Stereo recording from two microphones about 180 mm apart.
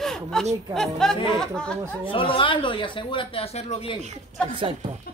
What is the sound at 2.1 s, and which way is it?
Speech, 30° left (ahead or behind).